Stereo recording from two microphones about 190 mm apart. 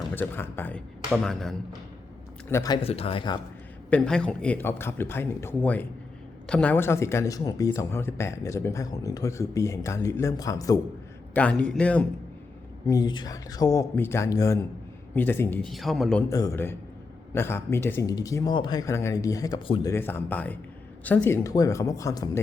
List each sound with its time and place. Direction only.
0.1 s speech: 10° left (ahead or behind)
2.5 s speech: 15° left (ahead or behind)
2.8 s speech: 30° left (ahead or behind)
3.8 s speech: 5° left (ahead or behind)
11.3 s speech: 5° left (ahead or behind)
12.9 s speech: 20° left (ahead or behind); by 16.2 s centre (ahead or behind)
16.3 s speech: 15° left (ahead or behind)
19.9 s speech: 10° left (ahead or behind)